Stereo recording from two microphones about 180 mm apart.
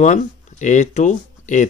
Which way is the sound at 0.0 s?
40° left (ahead or behind).